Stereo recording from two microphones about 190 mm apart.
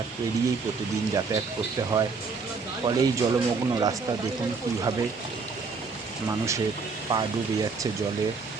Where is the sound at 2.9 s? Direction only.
20° right (ahead or behind).